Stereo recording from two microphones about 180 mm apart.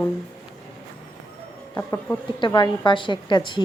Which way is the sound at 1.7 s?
15° left (ahead or behind).